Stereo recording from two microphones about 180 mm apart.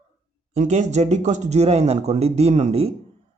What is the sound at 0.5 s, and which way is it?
Speech, 40° right (ahead or behind).